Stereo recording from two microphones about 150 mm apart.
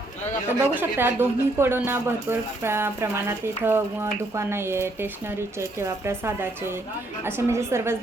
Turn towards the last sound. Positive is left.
turn(degrees=-15)  # may be behind; listen again after turning